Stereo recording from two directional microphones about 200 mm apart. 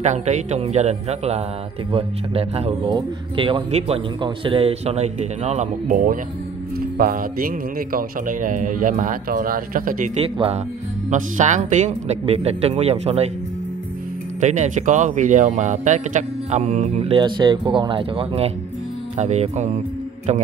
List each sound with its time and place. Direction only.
0.0 s a man's voice: 35° right (ahead or behind)
14.4 s speech: 40° right (ahead or behind)